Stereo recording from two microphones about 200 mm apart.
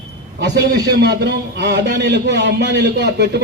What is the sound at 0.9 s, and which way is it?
A man's voice, 55° right (ahead or behind).